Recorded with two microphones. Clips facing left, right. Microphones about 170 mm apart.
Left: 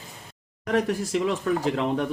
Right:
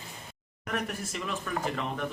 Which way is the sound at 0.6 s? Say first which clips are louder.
Left 10 dB; 90° left.